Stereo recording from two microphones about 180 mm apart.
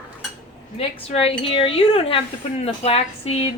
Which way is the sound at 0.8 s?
35° left (ahead or behind).